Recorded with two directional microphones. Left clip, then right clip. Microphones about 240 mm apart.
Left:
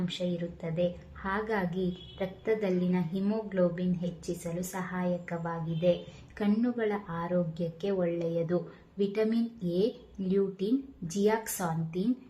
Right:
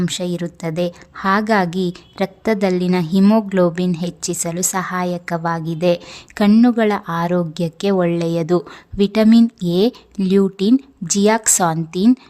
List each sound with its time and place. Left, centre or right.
0.0 s a woman's voice: right